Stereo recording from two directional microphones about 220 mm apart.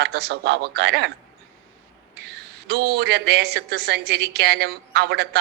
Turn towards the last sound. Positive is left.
turn(degrees=-50)  # may be behind; listen again after turning